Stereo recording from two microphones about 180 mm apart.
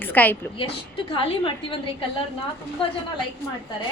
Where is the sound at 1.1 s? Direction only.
30° left (ahead or behind).